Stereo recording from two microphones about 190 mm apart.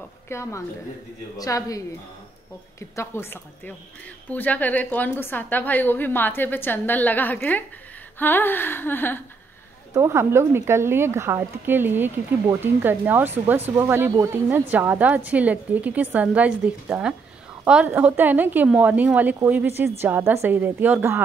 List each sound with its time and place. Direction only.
0.3 s a woman's voice: 15° left (ahead or behind)
3.0 s a woman's voice: 10° left (ahead or behind)
9.9 s a woman's voice: 15° right (ahead or behind)